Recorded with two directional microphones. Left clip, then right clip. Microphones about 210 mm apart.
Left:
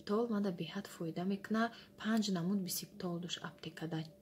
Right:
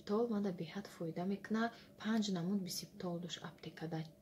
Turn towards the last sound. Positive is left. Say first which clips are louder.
# left 2 dB
turn(degrees=30)  # may be behind; listen again after turning